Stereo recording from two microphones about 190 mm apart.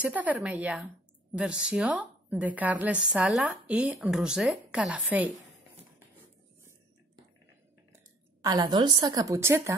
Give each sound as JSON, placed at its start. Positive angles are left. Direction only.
{"t": 0.0, "sound": "a woman's voice", "side_deg": -10}
{"t": 7.9, "sound": "a woman's voice", "side_deg": -20}